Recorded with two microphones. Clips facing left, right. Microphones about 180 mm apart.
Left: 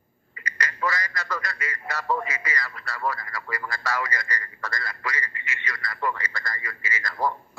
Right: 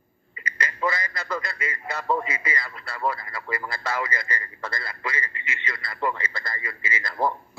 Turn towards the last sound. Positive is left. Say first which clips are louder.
# right 1 dB
turn(degrees=-25)  # may be behind; listen again after turning